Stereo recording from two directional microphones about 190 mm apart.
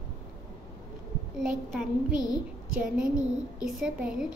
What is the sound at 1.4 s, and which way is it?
A child's voice, 5° right (ahead or behind).